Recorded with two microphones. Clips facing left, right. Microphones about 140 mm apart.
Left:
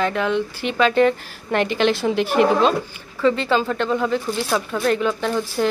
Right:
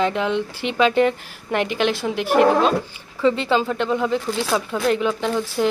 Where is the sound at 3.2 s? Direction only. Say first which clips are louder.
Even; 20° right (ahead or behind).